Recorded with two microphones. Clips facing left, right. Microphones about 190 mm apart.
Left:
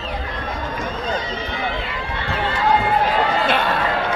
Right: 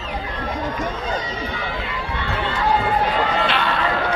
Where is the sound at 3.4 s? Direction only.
50° left (ahead or behind).